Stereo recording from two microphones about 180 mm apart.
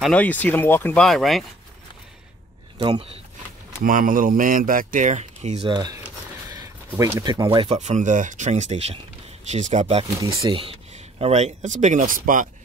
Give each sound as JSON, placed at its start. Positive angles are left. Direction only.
{"t": 0.0, "sound": "speech", "side_deg": 10}
{"t": 2.8, "sound": "speech", "side_deg": -30}
{"t": 3.8, "sound": "speech", "side_deg": -50}
{"t": 7.6, "sound": "speech", "side_deg": -40}
{"t": 10.0, "sound": "speech", "side_deg": -25}